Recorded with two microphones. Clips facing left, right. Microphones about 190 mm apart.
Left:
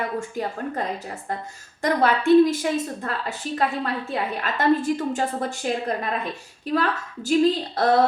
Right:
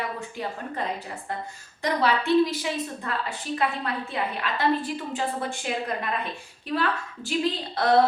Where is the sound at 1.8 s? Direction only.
50° left (ahead or behind).